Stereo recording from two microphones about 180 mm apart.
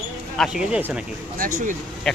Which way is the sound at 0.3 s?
5° right (ahead or behind).